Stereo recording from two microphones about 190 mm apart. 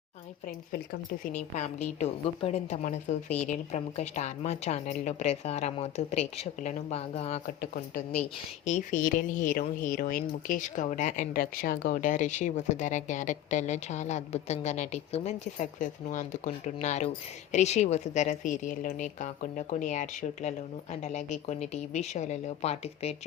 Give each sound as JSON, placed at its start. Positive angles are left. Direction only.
{"t": 1.5, "sound": "speech", "side_deg": 40}
{"t": 7.6, "sound": "a woman's voice", "side_deg": 50}